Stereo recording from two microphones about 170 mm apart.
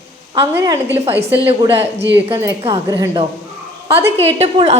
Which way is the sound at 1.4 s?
35° right (ahead or behind).